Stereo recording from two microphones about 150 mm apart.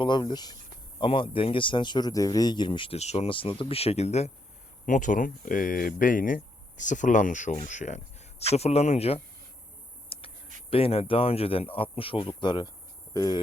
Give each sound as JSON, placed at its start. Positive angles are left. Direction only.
{"t": 0.0, "sound": "speech", "side_deg": 30}
{"t": 3.0, "sound": "speech", "side_deg": 45}
{"t": 4.9, "sound": "speech", "side_deg": 60}
{"t": 10.1, "sound": "a sound", "side_deg": 40}
{"t": 11.1, "sound": "speech", "side_deg": 40}